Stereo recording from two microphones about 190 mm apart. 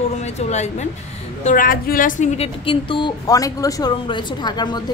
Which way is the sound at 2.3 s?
25° left (ahead or behind).